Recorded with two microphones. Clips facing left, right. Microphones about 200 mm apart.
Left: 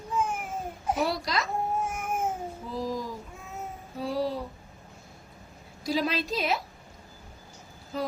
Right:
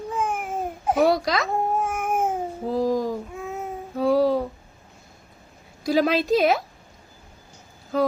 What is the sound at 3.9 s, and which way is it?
Music, 55° right (ahead or behind).